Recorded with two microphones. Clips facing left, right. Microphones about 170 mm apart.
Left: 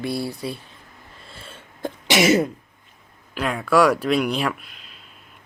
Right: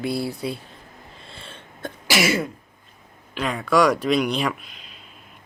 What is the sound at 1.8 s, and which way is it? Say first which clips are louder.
Cough: left 3 dB; 25° left (ahead or behind).